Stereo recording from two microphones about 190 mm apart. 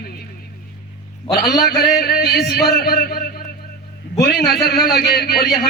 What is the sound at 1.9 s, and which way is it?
A man's voice, 55° left (ahead or behind).